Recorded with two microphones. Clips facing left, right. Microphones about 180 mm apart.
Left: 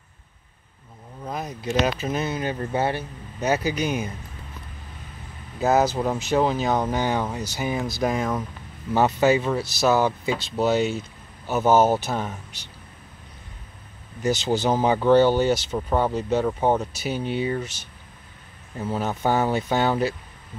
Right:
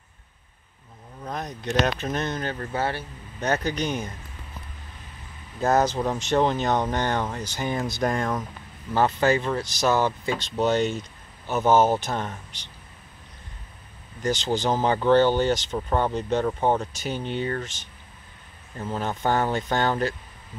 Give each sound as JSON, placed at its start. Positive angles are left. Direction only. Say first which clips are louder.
{"t": 1.2, "sound": "speech", "louder": "left 2 dB", "side_deg": 5}
{"t": 2.5, "sound": "speech", "louder": "left 3 dB", "side_deg": 20}
{"t": 3.3, "sound": "speech", "louder": "left 2 dB", "side_deg": 5}
{"t": 5.6, "sound": "speech", "louder": "left 1 dB", "side_deg": 5}
{"t": 14.2, "sound": "speech", "louder": "left 2 dB", "side_deg": 10}